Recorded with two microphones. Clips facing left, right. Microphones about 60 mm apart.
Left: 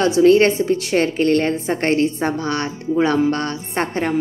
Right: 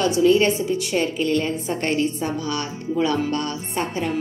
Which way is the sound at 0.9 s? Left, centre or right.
Left.